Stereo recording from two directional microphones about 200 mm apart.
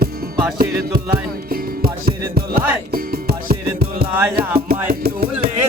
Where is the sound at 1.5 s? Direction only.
50° right (ahead or behind).